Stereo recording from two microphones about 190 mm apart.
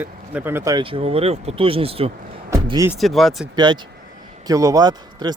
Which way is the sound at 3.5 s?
25° right (ahead or behind).